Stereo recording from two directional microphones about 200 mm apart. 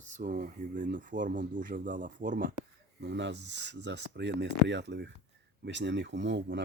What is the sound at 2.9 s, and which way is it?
Speech, 60° right (ahead or behind).